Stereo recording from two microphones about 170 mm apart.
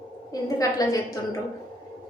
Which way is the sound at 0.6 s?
20° left (ahead or behind).